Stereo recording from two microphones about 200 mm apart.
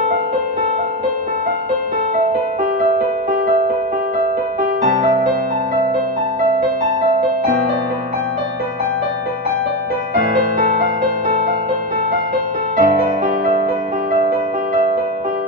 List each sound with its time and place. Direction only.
5.0 s music: 45° right (ahead or behind)
12.7 s music: 40° right (ahead or behind)